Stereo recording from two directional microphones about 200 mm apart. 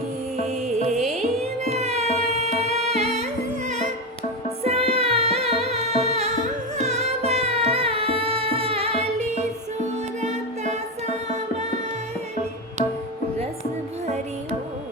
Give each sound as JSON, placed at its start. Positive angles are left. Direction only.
{"t": 0.3, "sound": "music", "side_deg": -35}
{"t": 4.6, "sound": "music", "side_deg": -30}